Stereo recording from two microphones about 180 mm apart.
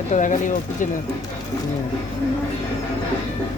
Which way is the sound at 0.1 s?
45° left (ahead or behind).